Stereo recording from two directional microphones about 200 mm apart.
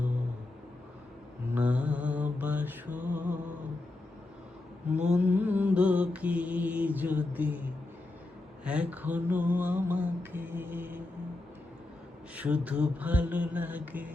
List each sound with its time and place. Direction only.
1.5 s mantra: 5° right (ahead or behind)
4.9 s mantra: 35° right (ahead or behind)
5.2 s mantra: 10° right (ahead or behind)
8.6 s mantra: 5° right (ahead or behind)
12.4 s a sound: 5° right (ahead or behind)